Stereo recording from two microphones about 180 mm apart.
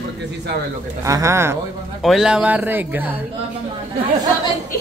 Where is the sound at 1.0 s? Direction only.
15° right (ahead or behind).